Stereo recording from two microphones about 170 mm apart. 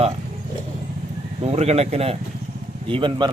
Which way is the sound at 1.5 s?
40° right (ahead or behind).